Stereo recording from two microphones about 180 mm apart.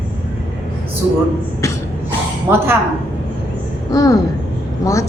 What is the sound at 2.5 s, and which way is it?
Speech, 10° right (ahead or behind).